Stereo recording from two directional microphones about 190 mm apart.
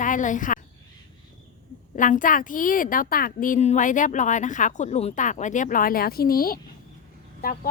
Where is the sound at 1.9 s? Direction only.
45° left (ahead or behind).